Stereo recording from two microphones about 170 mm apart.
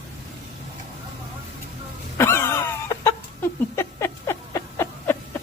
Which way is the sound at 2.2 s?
15° left (ahead or behind).